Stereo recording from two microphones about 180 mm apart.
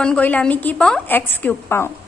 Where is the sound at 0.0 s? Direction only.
5° left (ahead or behind).